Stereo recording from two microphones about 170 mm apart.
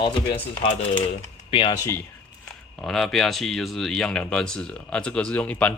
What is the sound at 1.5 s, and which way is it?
Speech, 30° left (ahead or behind).